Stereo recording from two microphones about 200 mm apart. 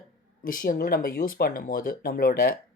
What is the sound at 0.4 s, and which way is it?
Speech, 45° left (ahead or behind).